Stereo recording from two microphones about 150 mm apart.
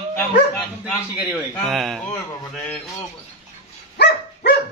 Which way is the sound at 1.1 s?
10° right (ahead or behind).